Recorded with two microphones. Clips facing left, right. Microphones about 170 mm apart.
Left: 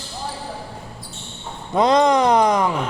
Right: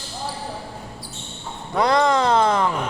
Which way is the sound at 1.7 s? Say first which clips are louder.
Left 3 dB; 20° left (ahead or behind).